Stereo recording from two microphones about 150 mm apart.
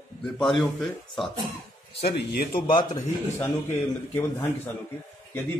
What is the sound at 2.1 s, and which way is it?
Speech, 90° left.